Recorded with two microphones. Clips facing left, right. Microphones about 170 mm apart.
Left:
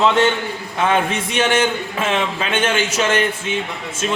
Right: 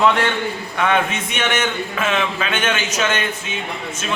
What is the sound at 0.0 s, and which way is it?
A man's voice, 20° left (ahead or behind).